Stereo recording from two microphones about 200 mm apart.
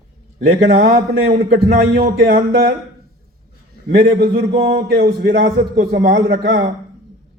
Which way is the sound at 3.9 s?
50° right (ahead or behind).